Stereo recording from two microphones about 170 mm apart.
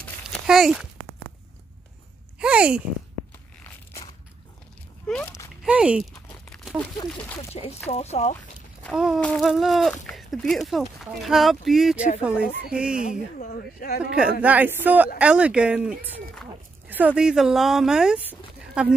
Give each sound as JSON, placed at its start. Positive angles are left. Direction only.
{"t": 0.5, "sound": "speech", "side_deg": -5}
{"t": 2.3, "sound": "speech", "side_deg": -5}
{"t": 5.0, "sound": "a sound", "side_deg": 10}
{"t": 5.6, "sound": "a sound", "side_deg": -5}
{"t": 7.5, "sound": "speech", "side_deg": 35}
{"t": 8.9, "sound": "speech", "side_deg": -5}
{"t": 13.1, "sound": "speech", "side_deg": 60}
{"t": 14.4, "sound": "speech", "side_deg": -10}